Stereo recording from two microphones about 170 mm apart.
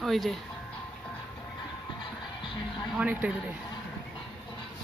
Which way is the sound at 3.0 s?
10° right (ahead or behind).